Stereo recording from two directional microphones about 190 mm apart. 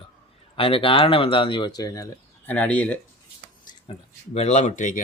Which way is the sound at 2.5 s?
10° left (ahead or behind).